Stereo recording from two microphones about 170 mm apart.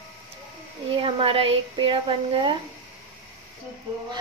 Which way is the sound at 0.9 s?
30° right (ahead or behind).